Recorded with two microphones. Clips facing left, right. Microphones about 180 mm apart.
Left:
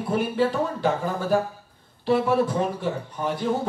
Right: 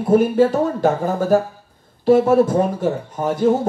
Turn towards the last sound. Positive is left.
turn(degrees=-45)  # may be behind; listen again after turning